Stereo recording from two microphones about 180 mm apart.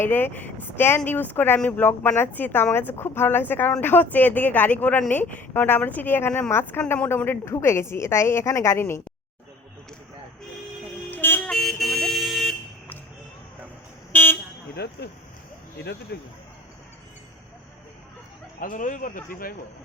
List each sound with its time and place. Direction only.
0.0 s speech: 10° left (ahead or behind)
11.1 s vehicle: 10° left (ahead or behind)
14.1 s vehicle: 10° left (ahead or behind)
14.8 s speech: 65° left (ahead or behind)
16.1 s speech: 60° left (ahead or behind)
18.6 s speech: 50° left (ahead or behind)